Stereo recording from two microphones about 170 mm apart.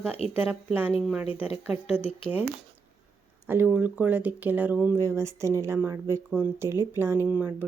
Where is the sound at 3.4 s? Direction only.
10° right (ahead or behind).